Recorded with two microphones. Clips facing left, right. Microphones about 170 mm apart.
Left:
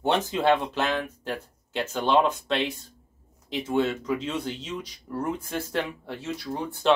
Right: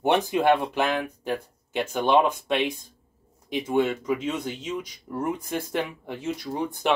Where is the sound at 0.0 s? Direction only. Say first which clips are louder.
Right 2 dB; 15° right (ahead or behind).